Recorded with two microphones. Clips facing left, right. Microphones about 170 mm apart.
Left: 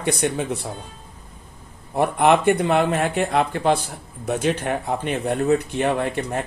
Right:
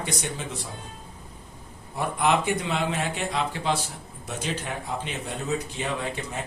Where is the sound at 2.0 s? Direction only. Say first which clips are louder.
Left 7 dB; 60° left (ahead or behind).